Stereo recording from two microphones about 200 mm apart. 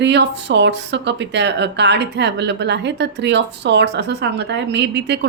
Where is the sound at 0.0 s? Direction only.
60° right (ahead or behind).